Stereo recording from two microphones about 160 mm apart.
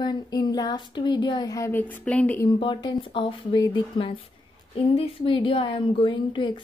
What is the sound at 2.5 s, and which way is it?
Speech, 30° left (ahead or behind).